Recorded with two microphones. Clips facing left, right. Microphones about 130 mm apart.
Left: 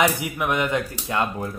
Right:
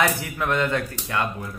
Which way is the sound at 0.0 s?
15° left (ahead or behind).